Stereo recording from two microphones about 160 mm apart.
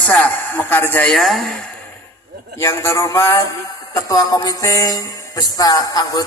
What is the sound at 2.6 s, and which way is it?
Music, 20° left (ahead or behind).